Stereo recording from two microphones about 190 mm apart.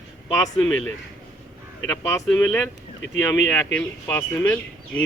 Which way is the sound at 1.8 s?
15° left (ahead or behind).